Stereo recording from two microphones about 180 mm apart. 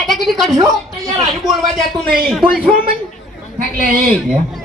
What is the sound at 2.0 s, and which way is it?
Speech, 55° right (ahead or behind).